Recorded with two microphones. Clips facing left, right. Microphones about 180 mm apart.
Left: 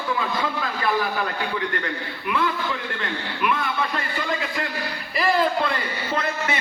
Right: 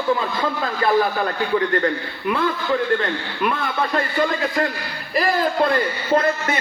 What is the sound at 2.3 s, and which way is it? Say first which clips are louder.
Speech: right 4 dB; 35° right (ahead or behind).